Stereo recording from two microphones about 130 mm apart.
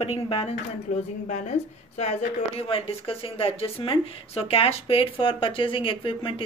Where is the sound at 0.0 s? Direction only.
50° left (ahead or behind).